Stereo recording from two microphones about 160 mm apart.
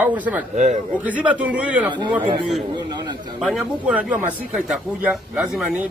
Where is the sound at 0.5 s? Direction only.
45° right (ahead or behind).